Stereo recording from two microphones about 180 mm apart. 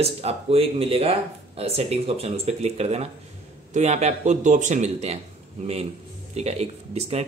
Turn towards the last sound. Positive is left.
turn(degrees=-35)  # may be behind; listen again after turning